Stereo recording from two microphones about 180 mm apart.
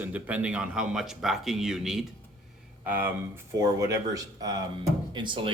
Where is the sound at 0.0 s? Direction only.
10° right (ahead or behind).